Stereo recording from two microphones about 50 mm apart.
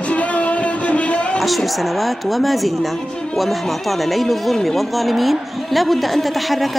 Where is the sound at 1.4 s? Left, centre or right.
Centre.